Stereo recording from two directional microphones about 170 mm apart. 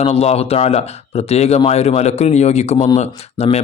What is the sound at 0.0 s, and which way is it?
Speech, 40° left (ahead or behind).